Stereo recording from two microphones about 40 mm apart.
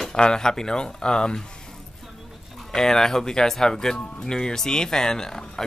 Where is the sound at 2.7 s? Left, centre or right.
Centre.